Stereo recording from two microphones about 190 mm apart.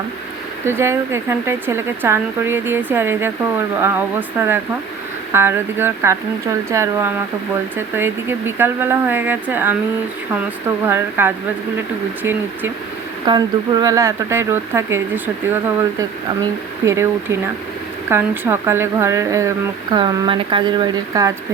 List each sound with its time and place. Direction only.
0.6 s a woman's voice: 15° right (ahead or behind)
10.8 s a woman's voice: 10° right (ahead or behind)
16.8 s a woman's voice: 15° right (ahead or behind)